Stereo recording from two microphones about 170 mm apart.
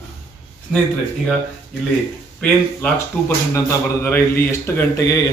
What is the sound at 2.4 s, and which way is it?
Speech, 10° left (ahead or behind).